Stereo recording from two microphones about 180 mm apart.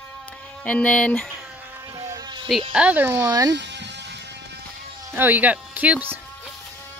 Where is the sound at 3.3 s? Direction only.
20° right (ahead or behind).